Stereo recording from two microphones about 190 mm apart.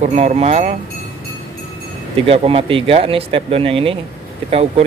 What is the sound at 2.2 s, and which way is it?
Speech, 30° right (ahead or behind).